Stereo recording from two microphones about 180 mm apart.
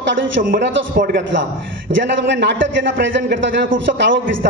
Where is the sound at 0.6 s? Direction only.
75° right (ahead or behind); by 4.2 s 90° right.